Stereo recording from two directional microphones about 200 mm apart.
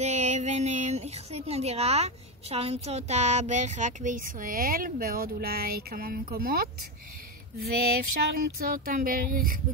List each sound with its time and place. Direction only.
0.0 s speech: 35° right (ahead or behind)